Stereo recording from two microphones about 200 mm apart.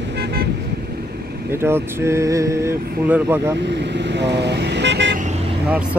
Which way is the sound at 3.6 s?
60° right (ahead or behind).